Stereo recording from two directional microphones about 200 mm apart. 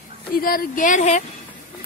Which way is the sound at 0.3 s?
45° left (ahead or behind).